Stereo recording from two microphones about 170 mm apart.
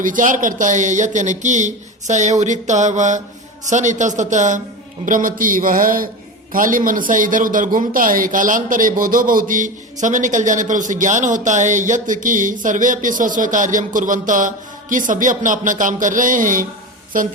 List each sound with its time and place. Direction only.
0.0 s a man's voice: 50° right (ahead or behind)